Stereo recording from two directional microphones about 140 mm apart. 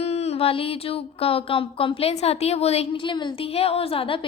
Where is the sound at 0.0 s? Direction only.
50° left (ahead or behind).